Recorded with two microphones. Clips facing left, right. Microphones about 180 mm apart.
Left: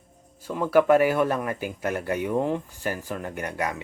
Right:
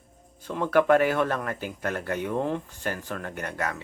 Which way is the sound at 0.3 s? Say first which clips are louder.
Left 2 dB; 10° left (ahead or behind).